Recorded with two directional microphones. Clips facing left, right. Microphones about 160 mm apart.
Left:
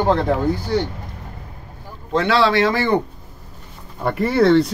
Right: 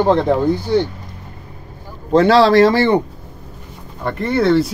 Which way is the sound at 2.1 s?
35° right (ahead or behind).